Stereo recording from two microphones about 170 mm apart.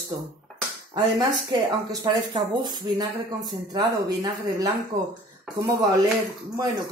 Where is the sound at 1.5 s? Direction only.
25° right (ahead or behind).